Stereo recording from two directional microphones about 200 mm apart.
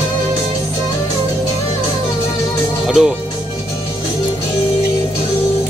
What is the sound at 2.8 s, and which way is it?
Music, centre (ahead or behind).